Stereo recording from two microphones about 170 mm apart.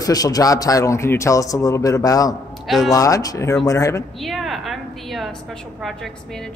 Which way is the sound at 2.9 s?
20° left (ahead or behind).